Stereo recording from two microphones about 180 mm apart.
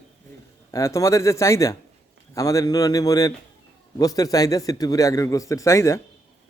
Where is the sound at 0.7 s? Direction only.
15° left (ahead or behind).